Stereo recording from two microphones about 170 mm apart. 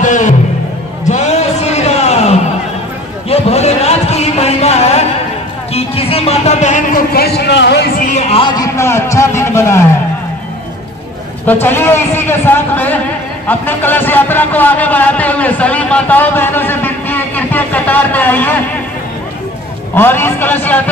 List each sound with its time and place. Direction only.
0.0 s music: 45° left (ahead or behind)
1.0 s a sound: 45° left (ahead or behind)
5.7 s music: 35° left (ahead or behind)
7.1 s a sound: 70° left (ahead or behind); by 9.8 s 15° left (ahead or behind)
11.4 s a man's voice: 10° left (ahead or behind)
20.0 s a man's voice: 15° left (ahead or behind)